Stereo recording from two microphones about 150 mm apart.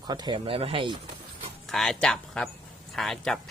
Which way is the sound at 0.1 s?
30° right (ahead or behind).